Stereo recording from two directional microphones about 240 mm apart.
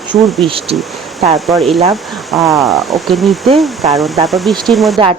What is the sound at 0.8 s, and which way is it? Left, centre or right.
Speech, centre.